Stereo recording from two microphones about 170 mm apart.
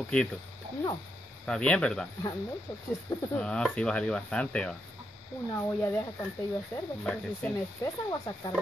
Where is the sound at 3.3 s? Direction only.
5° left (ahead or behind).